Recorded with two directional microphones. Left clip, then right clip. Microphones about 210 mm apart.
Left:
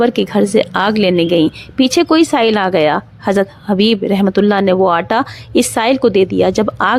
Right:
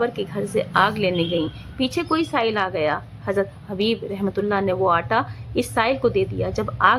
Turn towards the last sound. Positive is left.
turn(degrees=40)  # may be behind; listen again after turning